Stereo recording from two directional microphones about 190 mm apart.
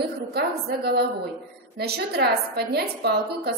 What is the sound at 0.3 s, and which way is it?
A woman's voice, 55° right (ahead or behind).